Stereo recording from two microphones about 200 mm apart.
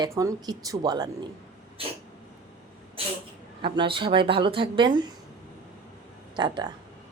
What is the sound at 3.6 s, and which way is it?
Speech, 25° right (ahead or behind).